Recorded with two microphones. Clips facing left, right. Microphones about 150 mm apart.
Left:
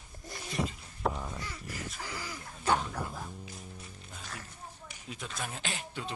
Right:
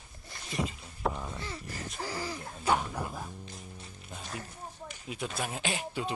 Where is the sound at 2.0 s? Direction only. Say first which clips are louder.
Right 5 dB; 35° right (ahead or behind).